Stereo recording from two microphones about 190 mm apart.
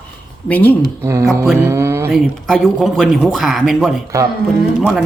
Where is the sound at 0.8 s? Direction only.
15° right (ahead or behind).